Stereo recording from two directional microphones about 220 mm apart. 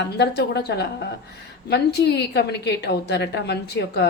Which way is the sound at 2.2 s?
50° left (ahead or behind).